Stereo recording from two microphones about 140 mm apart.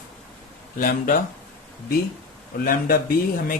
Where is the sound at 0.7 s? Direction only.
90° left.